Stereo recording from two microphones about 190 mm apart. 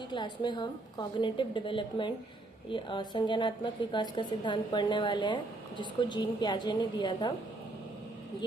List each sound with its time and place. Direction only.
0.1 s a woman's voice: 25° left (ahead or behind)